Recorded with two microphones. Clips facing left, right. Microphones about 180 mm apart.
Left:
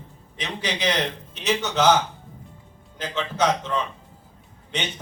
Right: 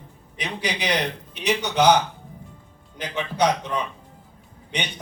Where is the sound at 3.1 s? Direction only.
15° right (ahead or behind).